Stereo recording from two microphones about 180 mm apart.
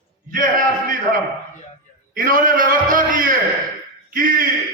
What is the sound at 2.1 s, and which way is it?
A man's voice, 50° right (ahead or behind).